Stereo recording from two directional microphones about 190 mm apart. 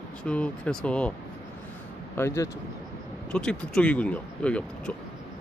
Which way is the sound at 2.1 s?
15° left (ahead or behind).